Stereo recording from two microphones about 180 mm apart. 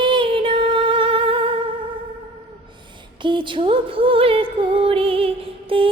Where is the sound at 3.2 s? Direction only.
25° right (ahead or behind).